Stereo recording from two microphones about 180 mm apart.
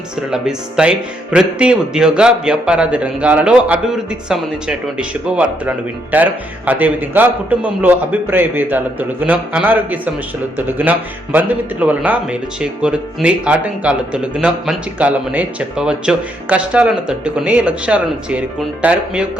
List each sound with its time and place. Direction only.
0.3 s speech: 5° right (ahead or behind)